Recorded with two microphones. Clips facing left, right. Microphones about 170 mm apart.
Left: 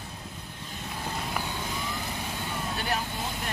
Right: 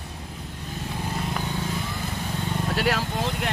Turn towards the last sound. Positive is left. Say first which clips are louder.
# right 7 dB
turn(degrees=-90)